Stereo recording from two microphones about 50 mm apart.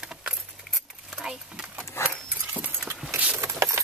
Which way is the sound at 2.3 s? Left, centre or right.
Right.